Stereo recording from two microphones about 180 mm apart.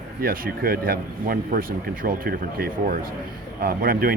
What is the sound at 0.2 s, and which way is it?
Speech, 55° right (ahead or behind).